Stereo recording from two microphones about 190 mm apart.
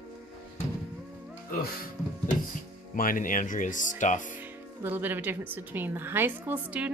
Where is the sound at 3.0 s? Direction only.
45° left (ahead or behind).